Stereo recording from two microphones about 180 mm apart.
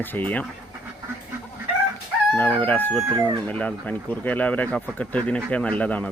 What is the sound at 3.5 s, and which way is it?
Speech, 10° left (ahead or behind).